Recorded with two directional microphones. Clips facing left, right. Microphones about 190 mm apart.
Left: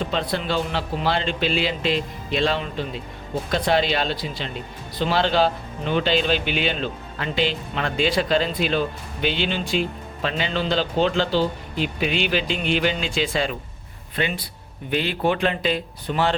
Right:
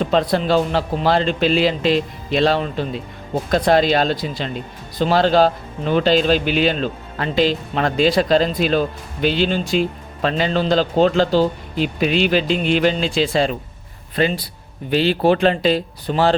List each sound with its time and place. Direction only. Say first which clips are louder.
0.1 s speech: right 8 dB; 40° right (ahead or behind)